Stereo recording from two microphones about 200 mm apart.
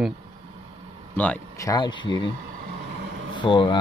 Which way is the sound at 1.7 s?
20° left (ahead or behind).